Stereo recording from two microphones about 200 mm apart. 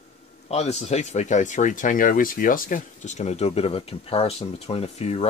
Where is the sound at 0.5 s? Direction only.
35° left (ahead or behind).